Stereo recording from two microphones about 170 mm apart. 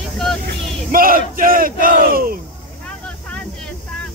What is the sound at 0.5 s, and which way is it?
Battle cry, 55° right (ahead or behind).